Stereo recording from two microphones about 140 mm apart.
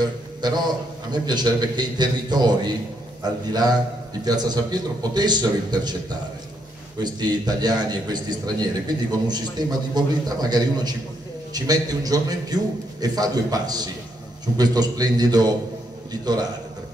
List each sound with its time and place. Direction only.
0.0 s a man's voice: 30° right (ahead or behind)
4.2 s a man's voice: 30° right (ahead or behind)